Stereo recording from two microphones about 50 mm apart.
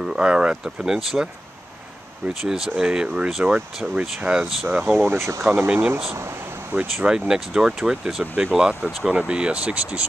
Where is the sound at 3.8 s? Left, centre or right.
Centre.